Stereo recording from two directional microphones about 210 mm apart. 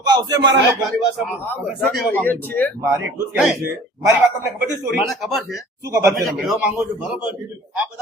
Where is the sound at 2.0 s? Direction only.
10° left (ahead or behind).